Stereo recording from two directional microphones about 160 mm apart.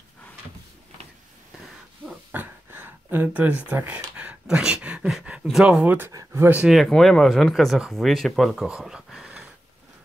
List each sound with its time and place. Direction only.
2.3 s speech: 10° right (ahead or behind)